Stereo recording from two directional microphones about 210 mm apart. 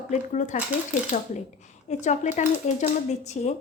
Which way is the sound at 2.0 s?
35° left (ahead or behind).